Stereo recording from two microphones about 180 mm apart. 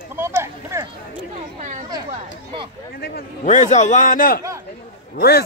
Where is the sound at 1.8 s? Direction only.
25° right (ahead or behind).